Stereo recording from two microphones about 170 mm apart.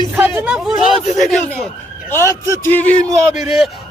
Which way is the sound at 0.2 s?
10° right (ahead or behind).